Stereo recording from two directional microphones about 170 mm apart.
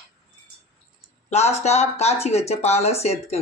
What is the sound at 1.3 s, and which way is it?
Speech, 40° left (ahead or behind).